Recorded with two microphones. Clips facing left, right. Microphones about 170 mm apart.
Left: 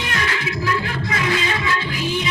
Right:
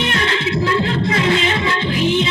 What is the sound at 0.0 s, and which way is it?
Music, 25° right (ahead or behind).